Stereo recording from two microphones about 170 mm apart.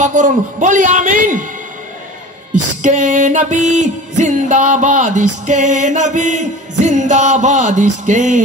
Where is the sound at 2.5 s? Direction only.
45° right (ahead or behind).